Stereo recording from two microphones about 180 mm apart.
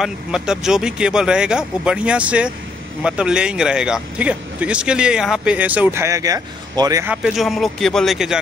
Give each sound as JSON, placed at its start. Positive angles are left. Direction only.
{"t": 0.0, "sound": "speech", "side_deg": -5}
{"t": 7.1, "sound": "speech", "side_deg": -5}